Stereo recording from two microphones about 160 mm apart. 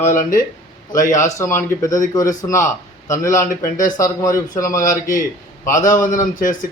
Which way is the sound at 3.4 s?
55° left (ahead or behind).